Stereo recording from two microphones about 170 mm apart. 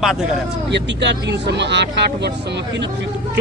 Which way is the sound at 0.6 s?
90° right.